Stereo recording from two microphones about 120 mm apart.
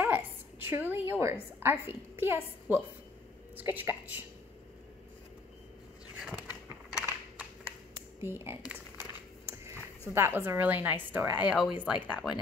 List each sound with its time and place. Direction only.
0.0 s a woman's voice: 20° right (ahead or behind)
6.1 s a sound: 10° right (ahead or behind)
8.2 s speech: 20° right (ahead or behind)
10.1 s a woman's voice: 20° right (ahead or behind)